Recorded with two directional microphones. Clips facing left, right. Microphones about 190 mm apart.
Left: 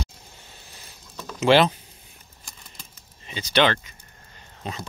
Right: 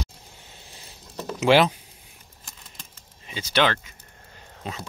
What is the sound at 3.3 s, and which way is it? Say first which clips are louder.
Speech: left 2 dB; 5° right (ahead or behind).